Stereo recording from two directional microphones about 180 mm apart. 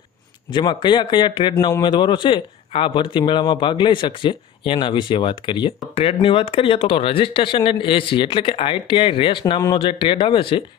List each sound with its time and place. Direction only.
0.5 s a man's voice: 25° left (ahead or behind)